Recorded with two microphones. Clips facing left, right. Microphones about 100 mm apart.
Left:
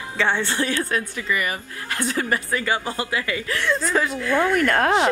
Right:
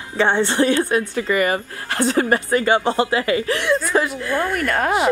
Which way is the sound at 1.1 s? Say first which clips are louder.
Right 7 dB; 40° right (ahead or behind).